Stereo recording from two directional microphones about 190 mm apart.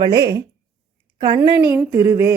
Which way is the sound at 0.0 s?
20° right (ahead or behind).